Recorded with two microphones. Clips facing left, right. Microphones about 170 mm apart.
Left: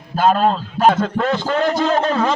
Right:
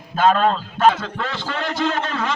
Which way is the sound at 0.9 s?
50° left (ahead or behind).